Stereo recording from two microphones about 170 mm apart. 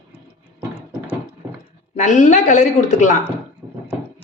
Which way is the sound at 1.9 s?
45° left (ahead or behind).